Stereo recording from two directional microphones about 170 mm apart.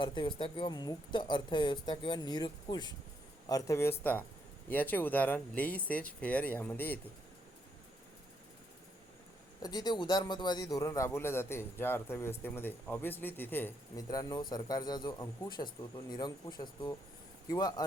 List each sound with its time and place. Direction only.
0.0 s speech: 30° left (ahead or behind)
3.5 s speech: 15° left (ahead or behind)
9.6 s speech: 25° left (ahead or behind)